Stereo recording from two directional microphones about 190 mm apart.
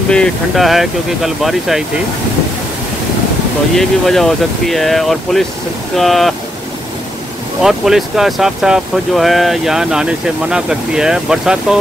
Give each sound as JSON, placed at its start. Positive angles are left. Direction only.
{"t": 0.1, "sound": "speech", "side_deg": 0}
{"t": 3.7, "sound": "speech", "side_deg": 0}
{"t": 7.6, "sound": "speech", "side_deg": 0}